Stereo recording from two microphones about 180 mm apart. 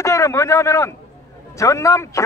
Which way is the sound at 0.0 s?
15° left (ahead or behind).